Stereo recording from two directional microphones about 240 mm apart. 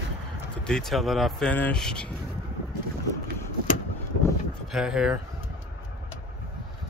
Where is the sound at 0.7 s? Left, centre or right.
Centre.